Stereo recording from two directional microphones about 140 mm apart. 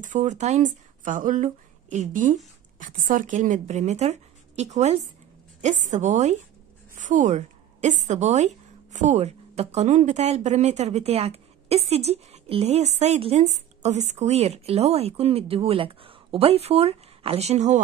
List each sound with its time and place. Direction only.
0.0 s a woman's voice: 60° right (ahead or behind)